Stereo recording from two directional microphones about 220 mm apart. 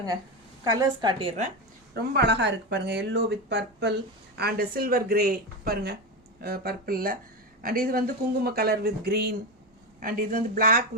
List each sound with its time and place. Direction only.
0.6 s a woman's voice: 15° right (ahead or behind)
2.0 s speech: 50° right (ahead or behind)